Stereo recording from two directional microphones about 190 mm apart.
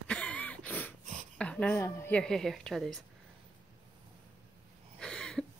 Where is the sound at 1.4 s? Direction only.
5° left (ahead or behind).